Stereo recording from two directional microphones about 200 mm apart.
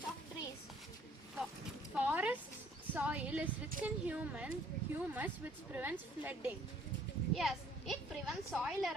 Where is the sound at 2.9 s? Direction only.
5° right (ahead or behind).